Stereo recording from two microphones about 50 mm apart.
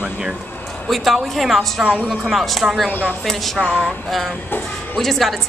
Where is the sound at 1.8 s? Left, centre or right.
Right.